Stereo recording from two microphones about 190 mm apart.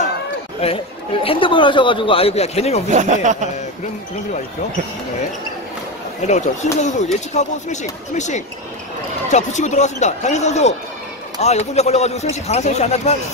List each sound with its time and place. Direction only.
0.6 s speech: 30° left (ahead or behind)
2.9 s speech: 40° right (ahead or behind)
6.2 s speech: 40° left (ahead or behind)